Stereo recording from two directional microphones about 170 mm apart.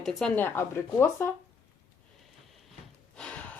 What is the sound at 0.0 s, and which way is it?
Speech, centre (ahead or behind).